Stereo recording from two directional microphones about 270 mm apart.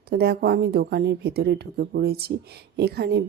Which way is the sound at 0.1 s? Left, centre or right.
Right.